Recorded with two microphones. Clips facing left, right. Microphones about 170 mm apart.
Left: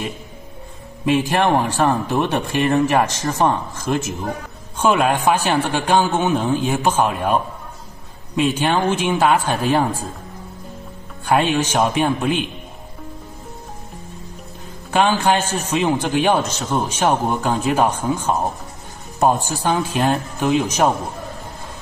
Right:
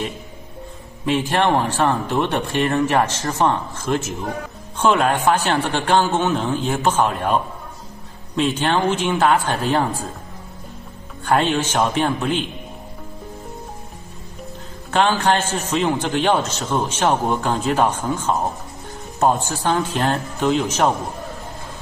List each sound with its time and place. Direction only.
1.0 s a man's voice: 15° left (ahead or behind)
8.4 s a man's voice: 10° left (ahead or behind)
11.2 s a man's voice: 15° left (ahead or behind)
14.9 s a man's voice: 10° left (ahead or behind)
19.4 s a man's voice: 10° left (ahead or behind)